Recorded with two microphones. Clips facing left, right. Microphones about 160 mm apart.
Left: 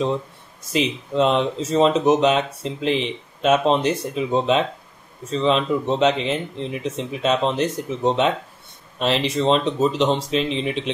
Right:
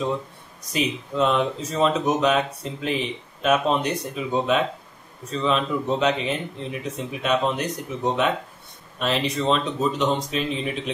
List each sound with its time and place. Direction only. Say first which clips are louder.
0.8 s speech: left 2 dB; 30° left (ahead or behind)